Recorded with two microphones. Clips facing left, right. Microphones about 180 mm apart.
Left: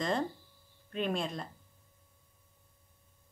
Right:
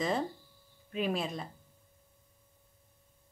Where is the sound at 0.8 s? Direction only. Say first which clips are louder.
Right 1 dB; 5° right (ahead or behind).